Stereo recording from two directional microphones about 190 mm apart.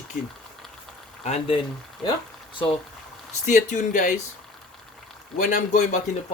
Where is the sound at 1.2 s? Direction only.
35° left (ahead or behind).